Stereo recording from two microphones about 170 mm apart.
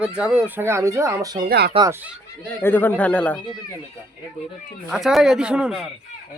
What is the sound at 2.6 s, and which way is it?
Speech, 10° left (ahead or behind).